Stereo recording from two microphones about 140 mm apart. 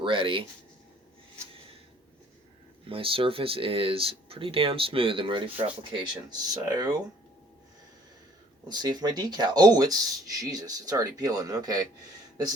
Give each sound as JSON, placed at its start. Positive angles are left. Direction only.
{"t": 0.0, "sound": "speech", "side_deg": -40}
{"t": 2.9, "sound": "speech", "side_deg": -40}
{"t": 8.6, "sound": "speech", "side_deg": -30}